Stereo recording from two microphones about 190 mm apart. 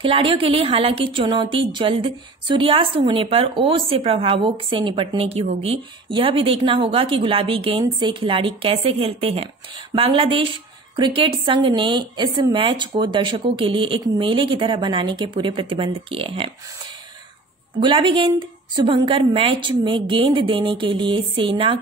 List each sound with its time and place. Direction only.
0.0 s a woman's voice: 30° right (ahead or behind)
17.7 s a woman's voice: 25° right (ahead or behind)